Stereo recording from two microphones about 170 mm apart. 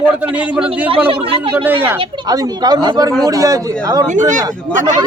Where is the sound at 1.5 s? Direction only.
10° right (ahead or behind).